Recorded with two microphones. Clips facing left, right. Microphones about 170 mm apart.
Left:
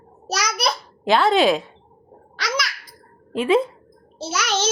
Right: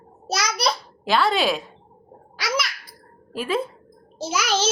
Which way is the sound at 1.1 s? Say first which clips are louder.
Left 4 dB; centre (ahead or behind).